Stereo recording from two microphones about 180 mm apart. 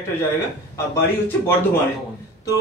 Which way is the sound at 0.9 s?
15° left (ahead or behind).